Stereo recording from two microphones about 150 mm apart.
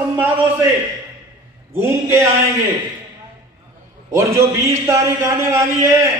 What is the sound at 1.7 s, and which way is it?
Speech, 20° right (ahead or behind).